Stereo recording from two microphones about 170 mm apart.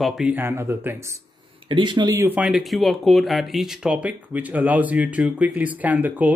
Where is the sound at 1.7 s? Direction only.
25° right (ahead or behind).